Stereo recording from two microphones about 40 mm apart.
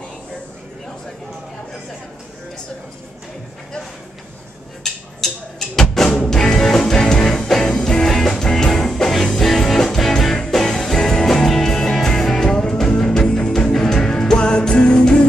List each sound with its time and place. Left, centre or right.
5.2 s music: centre